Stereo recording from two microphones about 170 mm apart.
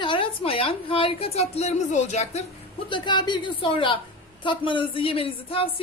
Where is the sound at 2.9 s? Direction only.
25° left (ahead or behind).